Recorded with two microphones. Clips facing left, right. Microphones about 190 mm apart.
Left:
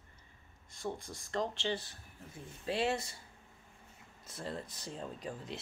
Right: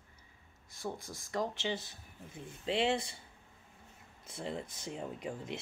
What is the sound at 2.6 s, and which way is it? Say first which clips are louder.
Speech: right 2 dB; 20° right (ahead or behind).